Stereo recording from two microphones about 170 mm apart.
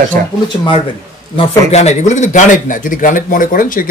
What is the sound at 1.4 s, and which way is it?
A man's voice, 40° left (ahead or behind).